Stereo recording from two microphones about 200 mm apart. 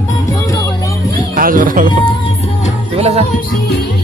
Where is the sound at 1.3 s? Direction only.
45° right (ahead or behind).